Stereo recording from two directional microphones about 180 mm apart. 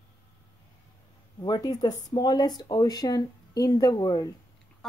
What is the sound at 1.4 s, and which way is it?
Speech, 25° left (ahead or behind).